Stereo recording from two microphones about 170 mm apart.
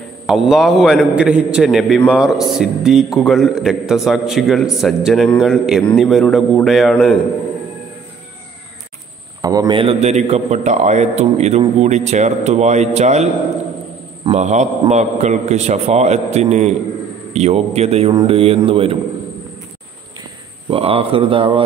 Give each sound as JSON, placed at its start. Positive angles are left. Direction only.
{"t": 0.3, "sound": "a man's voice", "side_deg": 0}
{"t": 9.4, "sound": "a man's voice", "side_deg": -25}
{"t": 20.7, "sound": "a man's voice", "side_deg": -35}